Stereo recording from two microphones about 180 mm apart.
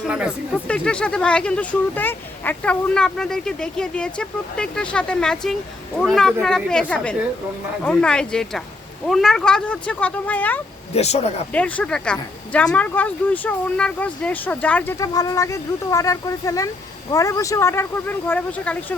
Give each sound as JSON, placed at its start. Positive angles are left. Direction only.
{"t": 0.1, "sound": "speech", "side_deg": -5}
{"t": 10.9, "sound": "speech", "side_deg": 35}
{"t": 11.5, "sound": "speech", "side_deg": 5}